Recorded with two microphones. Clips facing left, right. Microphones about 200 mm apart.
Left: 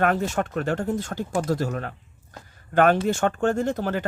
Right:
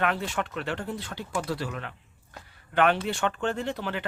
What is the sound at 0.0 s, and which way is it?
Speech, 45° left (ahead or behind).